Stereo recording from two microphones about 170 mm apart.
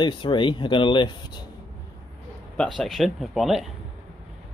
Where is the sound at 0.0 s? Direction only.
30° left (ahead or behind).